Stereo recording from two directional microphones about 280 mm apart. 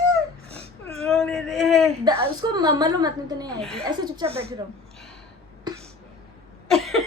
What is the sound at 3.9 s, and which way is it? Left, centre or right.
Speech, centre.